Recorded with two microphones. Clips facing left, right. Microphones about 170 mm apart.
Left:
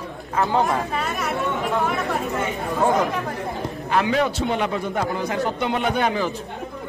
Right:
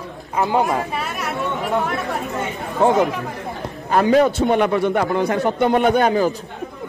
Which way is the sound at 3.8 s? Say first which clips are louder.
Right 6 dB; 40° right (ahead or behind).